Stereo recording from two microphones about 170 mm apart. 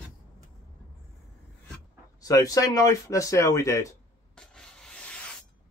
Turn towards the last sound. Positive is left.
turn(degrees=5)  # may be behind; listen again after turning